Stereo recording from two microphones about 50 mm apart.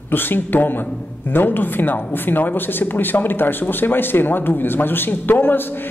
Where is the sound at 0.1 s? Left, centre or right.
Left.